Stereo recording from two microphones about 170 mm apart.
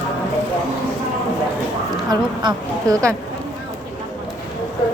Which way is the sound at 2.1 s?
25° right (ahead or behind).